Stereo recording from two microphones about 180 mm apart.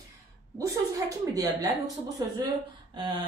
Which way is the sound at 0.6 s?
20° right (ahead or behind).